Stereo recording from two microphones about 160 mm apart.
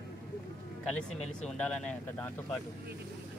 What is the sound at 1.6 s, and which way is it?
Speech, 5° left (ahead or behind).